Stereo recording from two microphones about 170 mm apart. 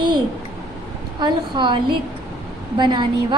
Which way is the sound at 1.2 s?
30° right (ahead or behind).